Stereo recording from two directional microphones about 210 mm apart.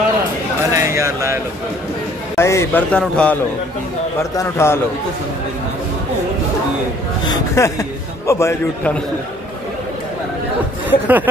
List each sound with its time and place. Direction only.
0.7 s a sound: 15° right (ahead or behind)
2.3 s speech: 15° left (ahead or behind)
7.2 s speech: 15° left (ahead or behind)
10.9 s speech: 10° right (ahead or behind)